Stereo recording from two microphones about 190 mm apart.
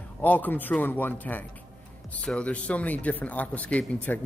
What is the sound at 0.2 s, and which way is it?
Speech, 10° left (ahead or behind).